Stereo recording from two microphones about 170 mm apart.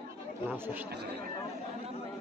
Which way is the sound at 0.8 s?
70° right (ahead or behind).